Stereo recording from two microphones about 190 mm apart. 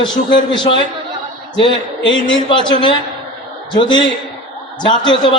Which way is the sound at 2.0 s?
75° left (ahead or behind).